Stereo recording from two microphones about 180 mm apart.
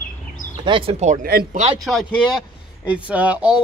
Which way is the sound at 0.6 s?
30° right (ahead or behind).